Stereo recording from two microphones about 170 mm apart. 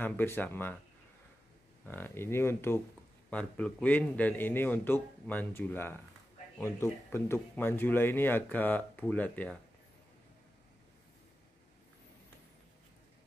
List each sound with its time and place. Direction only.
0.0 s speech: 10° left (ahead or behind)
1.9 s speech: 10° left (ahead or behind)